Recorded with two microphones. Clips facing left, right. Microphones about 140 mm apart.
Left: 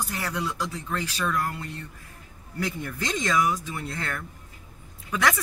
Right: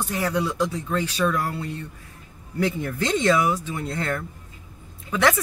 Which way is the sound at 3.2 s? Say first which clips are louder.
Right 3 dB; 10° right (ahead or behind).